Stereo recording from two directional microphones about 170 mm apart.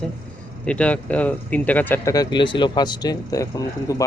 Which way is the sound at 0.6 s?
5° left (ahead or behind).